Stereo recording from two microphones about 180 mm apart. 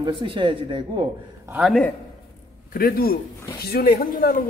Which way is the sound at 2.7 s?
55° left (ahead or behind).